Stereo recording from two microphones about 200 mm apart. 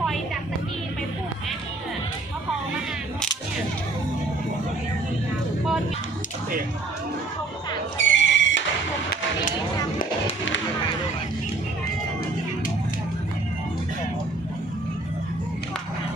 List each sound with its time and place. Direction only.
7.9 s music: 70° left (ahead or behind)